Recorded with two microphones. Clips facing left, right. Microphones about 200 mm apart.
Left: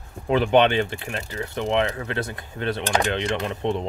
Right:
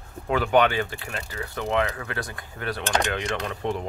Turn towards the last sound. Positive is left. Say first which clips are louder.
# left 3 dB
turn(degrees=25)  # may be behind; listen again after turning